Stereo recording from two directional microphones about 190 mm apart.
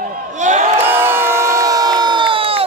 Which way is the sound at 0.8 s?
10° right (ahead or behind).